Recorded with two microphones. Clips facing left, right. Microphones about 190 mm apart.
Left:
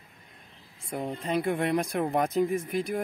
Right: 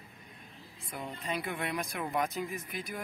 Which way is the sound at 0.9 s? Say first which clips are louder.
Left 8 dB; 45° left (ahead or behind).